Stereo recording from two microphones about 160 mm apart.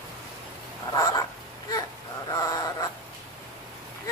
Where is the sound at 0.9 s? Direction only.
20° left (ahead or behind).